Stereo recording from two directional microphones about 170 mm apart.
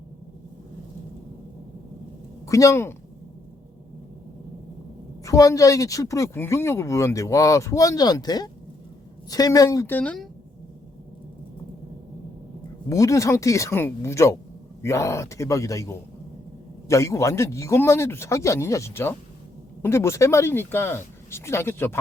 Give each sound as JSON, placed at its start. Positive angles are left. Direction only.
{"t": 2.5, "sound": "speech", "side_deg": 20}
{"t": 5.2, "sound": "speech", "side_deg": 20}
{"t": 12.9, "sound": "speech", "side_deg": 20}